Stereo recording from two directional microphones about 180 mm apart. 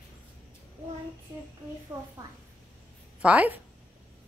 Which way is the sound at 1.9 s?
5° right (ahead or behind).